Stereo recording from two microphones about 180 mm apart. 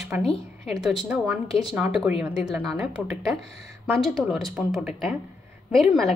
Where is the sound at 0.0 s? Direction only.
Centre (ahead or behind).